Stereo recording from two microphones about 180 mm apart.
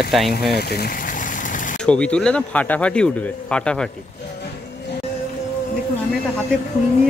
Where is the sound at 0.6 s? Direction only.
60° left (ahead or behind); by 1.8 s 45° left (ahead or behind).